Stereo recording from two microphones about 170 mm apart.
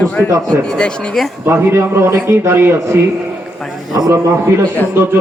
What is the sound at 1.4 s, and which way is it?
A man's voice, 15° right (ahead or behind).